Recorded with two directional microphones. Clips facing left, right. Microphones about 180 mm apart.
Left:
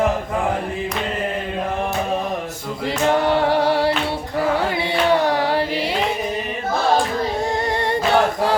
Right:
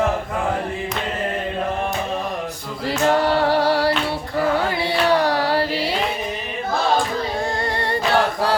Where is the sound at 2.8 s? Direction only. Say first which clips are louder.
Even; 20° left (ahead or behind).